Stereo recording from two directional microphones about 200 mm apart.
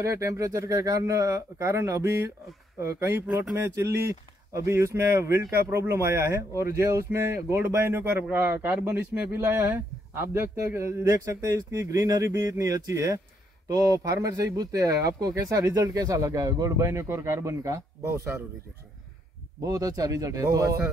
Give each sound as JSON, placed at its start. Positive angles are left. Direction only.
{"t": 0.0, "sound": "speech", "side_deg": -15}
{"t": 19.6, "sound": "speech", "side_deg": -15}